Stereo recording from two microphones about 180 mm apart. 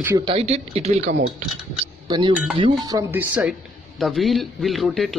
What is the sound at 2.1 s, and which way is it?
A man's voice, 25° right (ahead or behind).